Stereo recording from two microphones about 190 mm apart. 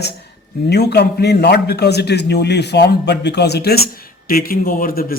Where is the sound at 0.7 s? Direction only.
60° left (ahead or behind).